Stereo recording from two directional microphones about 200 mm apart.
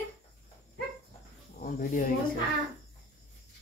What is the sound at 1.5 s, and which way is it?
Speech, 45° left (ahead or behind).